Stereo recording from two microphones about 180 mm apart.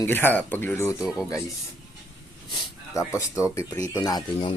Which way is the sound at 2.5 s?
15° left (ahead or behind).